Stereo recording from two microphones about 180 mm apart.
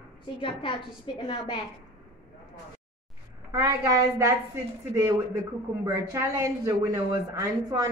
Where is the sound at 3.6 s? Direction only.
15° right (ahead or behind).